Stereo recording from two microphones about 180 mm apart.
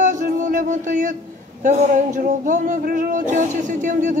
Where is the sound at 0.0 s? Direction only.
45° right (ahead or behind).